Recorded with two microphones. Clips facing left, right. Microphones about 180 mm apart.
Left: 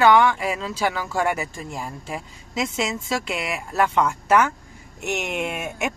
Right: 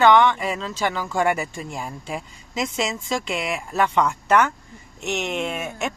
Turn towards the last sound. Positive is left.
turn(degrees=10)  # may be behind; listen again after turning